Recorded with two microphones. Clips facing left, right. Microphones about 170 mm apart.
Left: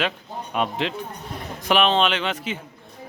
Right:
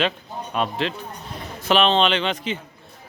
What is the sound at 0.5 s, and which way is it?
Speech, 15° left (ahead or behind).